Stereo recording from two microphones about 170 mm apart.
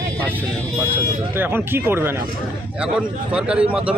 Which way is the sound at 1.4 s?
10° right (ahead or behind).